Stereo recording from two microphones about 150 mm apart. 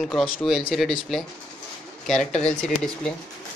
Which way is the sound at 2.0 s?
5° left (ahead or behind).